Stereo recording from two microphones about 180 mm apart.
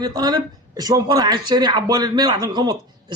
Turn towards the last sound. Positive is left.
turn(degrees=-25)  # may be behind; listen again after turning